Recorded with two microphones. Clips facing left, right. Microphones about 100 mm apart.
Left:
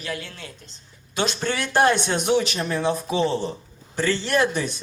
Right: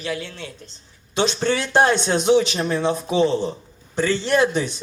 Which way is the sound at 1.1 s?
30° right (ahead or behind).